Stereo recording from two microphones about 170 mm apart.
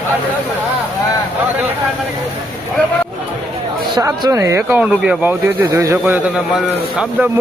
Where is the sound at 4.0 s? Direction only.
20° right (ahead or behind).